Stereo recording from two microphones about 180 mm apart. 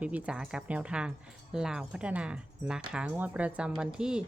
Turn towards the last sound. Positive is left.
turn(degrees=-5)  # may be behind; listen again after turning